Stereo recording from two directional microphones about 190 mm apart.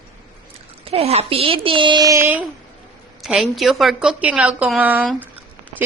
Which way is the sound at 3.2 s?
Centre (ahead or behind).